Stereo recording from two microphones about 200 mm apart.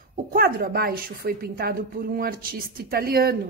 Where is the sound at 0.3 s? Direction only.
50° right (ahead or behind).